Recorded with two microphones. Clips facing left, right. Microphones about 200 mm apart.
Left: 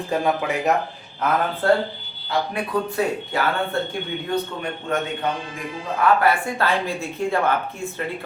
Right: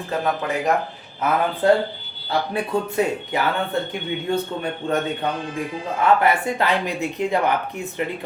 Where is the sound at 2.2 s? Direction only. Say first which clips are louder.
Right 1 dB; 30° right (ahead or behind).